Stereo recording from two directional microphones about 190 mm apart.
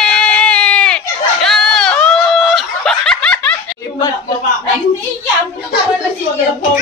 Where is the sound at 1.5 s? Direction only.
5° left (ahead or behind).